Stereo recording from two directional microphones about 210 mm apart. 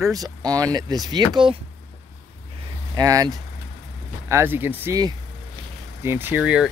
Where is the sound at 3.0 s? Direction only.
15° right (ahead or behind).